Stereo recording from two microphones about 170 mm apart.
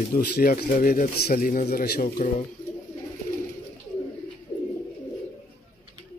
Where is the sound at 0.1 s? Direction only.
60° left (ahead or behind).